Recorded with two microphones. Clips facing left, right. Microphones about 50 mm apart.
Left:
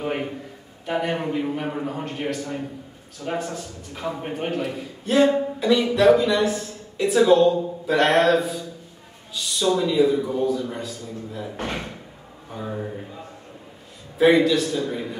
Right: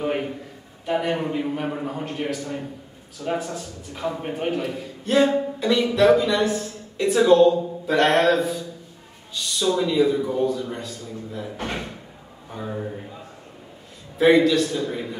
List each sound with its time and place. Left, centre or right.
0.0 s a sound: centre
0.8 s a man's voice: centre
14.1 s a man's voice: centre